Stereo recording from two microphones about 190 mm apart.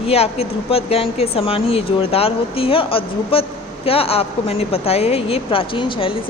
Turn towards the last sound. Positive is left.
turn(degrees=25)  # may be behind; listen again after turning